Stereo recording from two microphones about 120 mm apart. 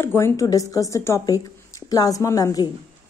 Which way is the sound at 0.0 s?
20° left (ahead or behind).